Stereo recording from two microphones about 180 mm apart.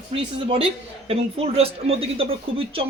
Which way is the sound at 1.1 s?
35° right (ahead or behind).